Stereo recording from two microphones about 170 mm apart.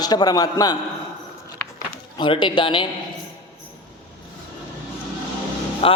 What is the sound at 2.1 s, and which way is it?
Speech, 30° left (ahead or behind).